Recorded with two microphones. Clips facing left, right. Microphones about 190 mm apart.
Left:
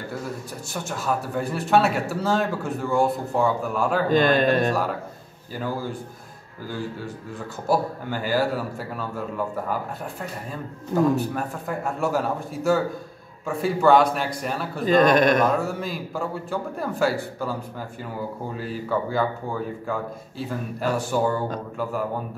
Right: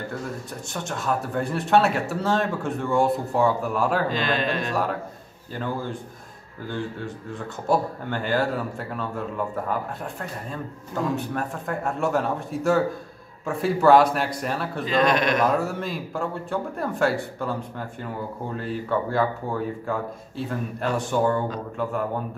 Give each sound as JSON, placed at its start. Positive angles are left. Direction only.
{"t": 0.8, "sound": "speech", "side_deg": 5}
{"t": 4.1, "sound": "a man's voice", "side_deg": 50}
{"t": 5.6, "sound": "a man's voice", "side_deg": 5}
{"t": 7.6, "sound": "speech", "side_deg": 5}
{"t": 11.1, "sound": "speech", "side_deg": 0}
{"t": 14.9, "sound": "a man's voice", "side_deg": 45}
{"t": 15.4, "sound": "speech", "side_deg": 0}